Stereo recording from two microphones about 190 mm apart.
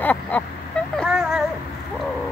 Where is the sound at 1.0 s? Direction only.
5° right (ahead or behind).